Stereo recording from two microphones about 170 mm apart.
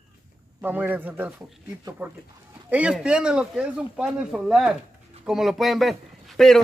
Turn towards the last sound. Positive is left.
turn(degrees=0)  # may be behind; listen again after turning